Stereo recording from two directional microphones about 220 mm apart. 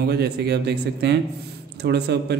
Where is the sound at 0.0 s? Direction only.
45° right (ahead or behind).